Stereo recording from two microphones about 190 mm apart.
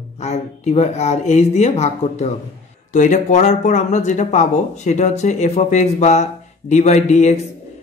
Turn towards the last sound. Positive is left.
turn(degrees=35)  # may be behind; listen again after turning